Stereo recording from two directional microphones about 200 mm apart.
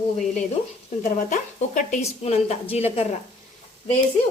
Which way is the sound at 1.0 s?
40° left (ahead or behind).